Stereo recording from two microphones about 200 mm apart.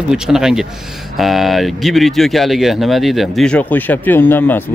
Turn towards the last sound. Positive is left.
turn(degrees=10)  # may be behind; listen again after turning